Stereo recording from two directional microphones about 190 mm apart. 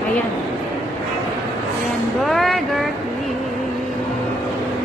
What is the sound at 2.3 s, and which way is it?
Music, centre (ahead or behind).